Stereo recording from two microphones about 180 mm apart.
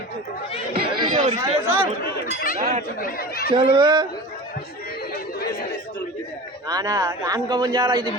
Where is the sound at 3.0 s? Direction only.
55° left (ahead or behind).